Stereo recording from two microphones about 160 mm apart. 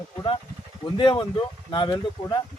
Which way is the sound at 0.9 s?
30° left (ahead or behind).